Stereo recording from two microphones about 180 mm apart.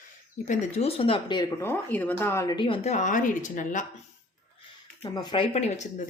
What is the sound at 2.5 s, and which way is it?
Speech, 30° left (ahead or behind).